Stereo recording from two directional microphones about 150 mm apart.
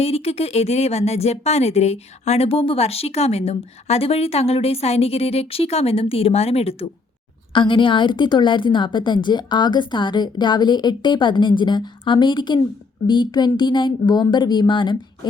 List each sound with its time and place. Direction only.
0.0 s a woman's voice: 40° left (ahead or behind)